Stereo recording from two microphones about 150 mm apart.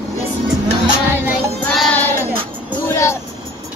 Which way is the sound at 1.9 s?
15° left (ahead or behind).